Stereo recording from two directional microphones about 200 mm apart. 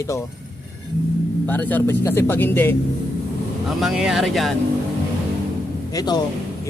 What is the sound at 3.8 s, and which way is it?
Speech, centre (ahead or behind).